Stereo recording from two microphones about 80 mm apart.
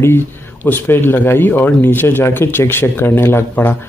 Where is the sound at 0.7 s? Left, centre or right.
Left.